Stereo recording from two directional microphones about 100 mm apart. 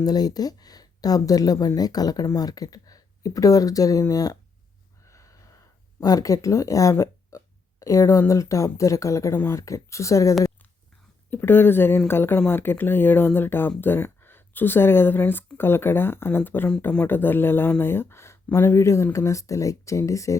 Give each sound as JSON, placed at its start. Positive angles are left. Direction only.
{"t": 0.0, "sound": "speech", "side_deg": 40}
{"t": 5.0, "sound": "gasp", "side_deg": 30}
{"t": 6.9, "sound": "a sound", "side_deg": 30}
{"t": 8.3, "sound": "speech", "side_deg": 30}
{"t": 11.3, "sound": "speech", "side_deg": 20}